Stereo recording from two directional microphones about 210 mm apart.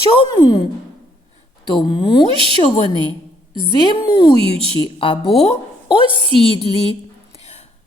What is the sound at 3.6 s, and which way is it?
Speech, 20° left (ahead or behind).